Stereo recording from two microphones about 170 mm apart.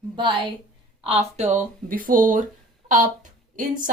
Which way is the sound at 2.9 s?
50° right (ahead or behind).